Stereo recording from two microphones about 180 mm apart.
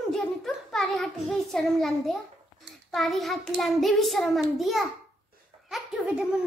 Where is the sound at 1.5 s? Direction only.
Centre (ahead or behind).